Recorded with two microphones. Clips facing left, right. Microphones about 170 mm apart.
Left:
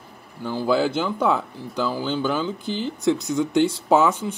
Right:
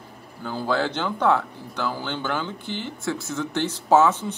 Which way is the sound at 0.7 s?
10° left (ahead or behind).